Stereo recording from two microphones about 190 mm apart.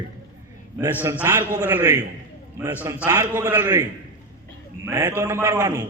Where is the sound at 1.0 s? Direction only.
10° right (ahead or behind).